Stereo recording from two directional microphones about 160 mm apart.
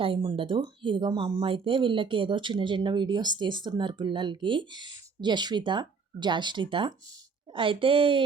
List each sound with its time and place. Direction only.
0.0 s a woman's voice: 30° right (ahead or behind)